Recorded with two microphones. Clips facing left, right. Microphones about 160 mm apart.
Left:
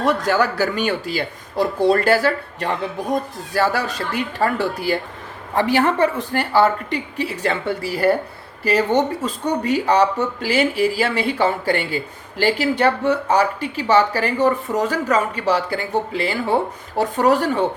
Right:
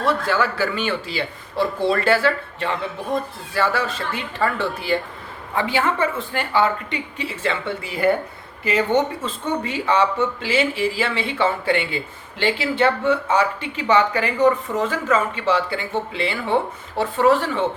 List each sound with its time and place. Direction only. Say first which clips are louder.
0.1 s a man's voice: left 1 dB; 40° left (ahead or behind)